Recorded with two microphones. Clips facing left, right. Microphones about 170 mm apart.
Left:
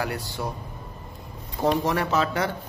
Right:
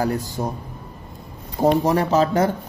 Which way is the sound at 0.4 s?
35° right (ahead or behind).